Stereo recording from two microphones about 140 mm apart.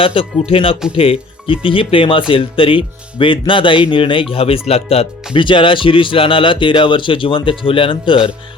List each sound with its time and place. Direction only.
0.0 s speech: 40° left (ahead or behind)